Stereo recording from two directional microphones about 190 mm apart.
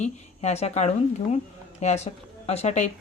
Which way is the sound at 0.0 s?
35° left (ahead or behind).